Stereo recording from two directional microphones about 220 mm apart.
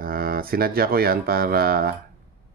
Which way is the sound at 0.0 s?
40° right (ahead or behind).